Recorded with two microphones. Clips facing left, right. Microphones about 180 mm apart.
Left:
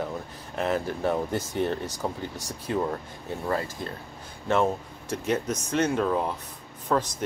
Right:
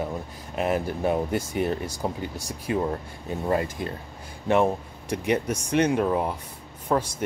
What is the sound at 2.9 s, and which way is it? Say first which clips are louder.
Speech: right 2 dB; 20° right (ahead or behind).